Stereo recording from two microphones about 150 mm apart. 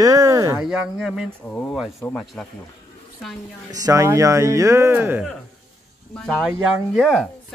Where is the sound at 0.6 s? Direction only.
5° right (ahead or behind).